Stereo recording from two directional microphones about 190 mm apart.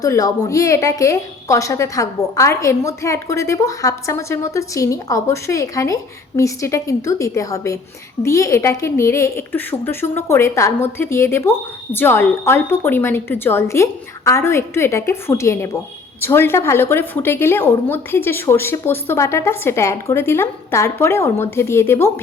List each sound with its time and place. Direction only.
0.0 s a woman's voice: 20° left (ahead or behind)